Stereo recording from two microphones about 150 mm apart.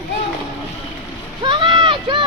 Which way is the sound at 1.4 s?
30° right (ahead or behind).